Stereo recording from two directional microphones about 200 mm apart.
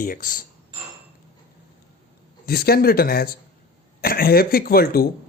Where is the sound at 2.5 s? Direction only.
50° left (ahead or behind).